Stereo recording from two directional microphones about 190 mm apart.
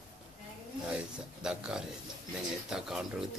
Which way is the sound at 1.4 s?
5° right (ahead or behind).